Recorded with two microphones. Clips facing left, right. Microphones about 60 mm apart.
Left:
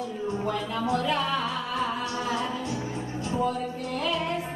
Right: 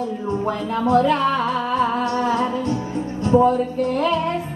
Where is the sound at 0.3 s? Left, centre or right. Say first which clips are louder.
Right 6 dB; right.